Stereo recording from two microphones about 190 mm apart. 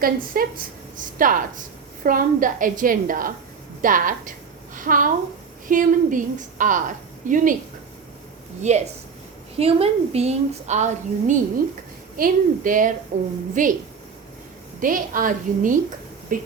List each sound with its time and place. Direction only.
0.0 s a woman's voice: 50° right (ahead or behind)
3.8 s a sound: 45° right (ahead or behind)
5.6 s a woman's voice: 45° right (ahead or behind)
8.6 s a woman's voice: 35° right (ahead or behind)
14.8 s a woman's voice: 45° right (ahead or behind)